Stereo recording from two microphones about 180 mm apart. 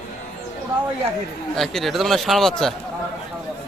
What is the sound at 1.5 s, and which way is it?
Speech, centre (ahead or behind).